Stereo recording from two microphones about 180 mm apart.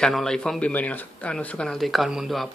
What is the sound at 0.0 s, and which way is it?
Speech, 5° left (ahead or behind).